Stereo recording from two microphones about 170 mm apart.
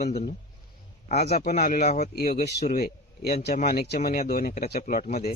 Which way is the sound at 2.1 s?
60° left (ahead or behind).